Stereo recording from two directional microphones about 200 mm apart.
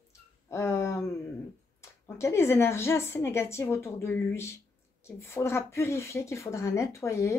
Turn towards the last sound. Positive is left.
turn(degrees=15)  # may be behind; listen again after turning